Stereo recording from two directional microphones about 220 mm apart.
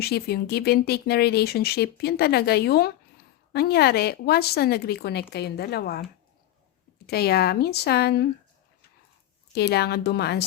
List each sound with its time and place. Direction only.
0.0 s speech: 45° left (ahead or behind)
7.1 s speech: 45° left (ahead or behind)
9.6 s speech: 45° left (ahead or behind)